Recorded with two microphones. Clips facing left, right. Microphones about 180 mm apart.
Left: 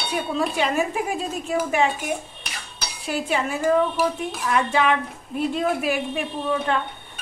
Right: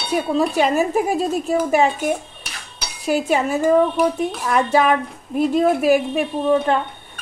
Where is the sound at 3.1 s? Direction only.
40° right (ahead or behind).